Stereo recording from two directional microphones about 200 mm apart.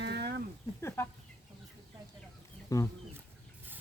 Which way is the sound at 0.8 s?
10° left (ahead or behind).